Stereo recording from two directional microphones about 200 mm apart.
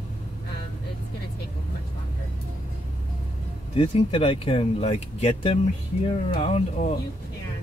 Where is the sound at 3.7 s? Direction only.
25° left (ahead or behind).